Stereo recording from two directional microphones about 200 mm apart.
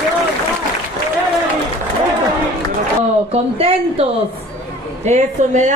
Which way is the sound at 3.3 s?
30° right (ahead or behind).